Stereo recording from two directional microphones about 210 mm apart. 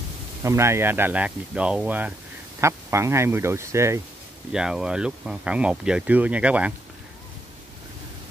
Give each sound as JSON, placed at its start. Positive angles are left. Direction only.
{"t": 0.4, "sound": "speech", "side_deg": -15}
{"t": 4.5, "sound": "speech", "side_deg": -5}